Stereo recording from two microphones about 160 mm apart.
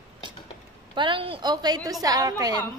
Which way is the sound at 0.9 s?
30° right (ahead or behind).